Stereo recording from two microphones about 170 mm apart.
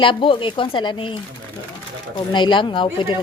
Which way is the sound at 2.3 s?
30° left (ahead or behind).